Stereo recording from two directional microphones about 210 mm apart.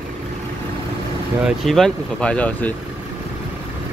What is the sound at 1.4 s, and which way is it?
Speech, centre (ahead or behind).